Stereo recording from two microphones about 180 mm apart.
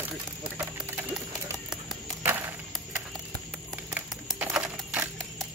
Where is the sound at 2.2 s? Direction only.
10° right (ahead or behind).